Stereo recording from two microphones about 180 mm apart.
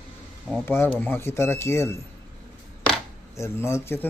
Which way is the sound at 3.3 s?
15° left (ahead or behind).